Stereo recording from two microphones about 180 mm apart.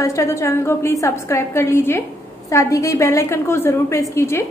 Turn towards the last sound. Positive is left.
turn(degrees=15)  # may be behind; listen again after turning